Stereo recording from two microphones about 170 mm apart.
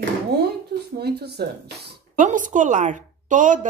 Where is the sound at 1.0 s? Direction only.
70° right (ahead or behind).